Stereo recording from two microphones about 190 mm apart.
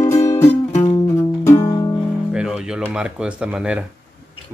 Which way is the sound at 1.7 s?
25° left (ahead or behind).